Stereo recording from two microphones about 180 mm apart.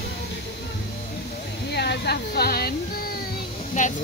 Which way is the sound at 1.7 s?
65° left (ahead or behind).